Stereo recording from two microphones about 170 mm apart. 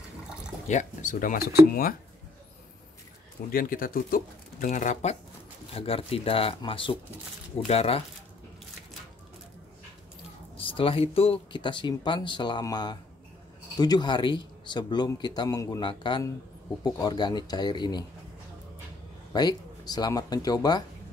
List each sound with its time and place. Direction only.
0.7 s speech: 45° left (ahead or behind)
3.5 s speech: 55° left (ahead or behind)
5.8 s speech: 35° left (ahead or behind)
10.6 s a man's voice: 30° left (ahead or behind)
19.3 s a man's voice: 25° left (ahead or behind)